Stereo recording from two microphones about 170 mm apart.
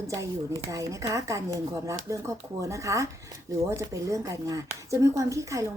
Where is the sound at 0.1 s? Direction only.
20° right (ahead or behind).